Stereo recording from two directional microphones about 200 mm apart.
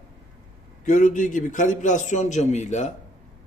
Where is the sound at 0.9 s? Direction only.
40° left (ahead or behind).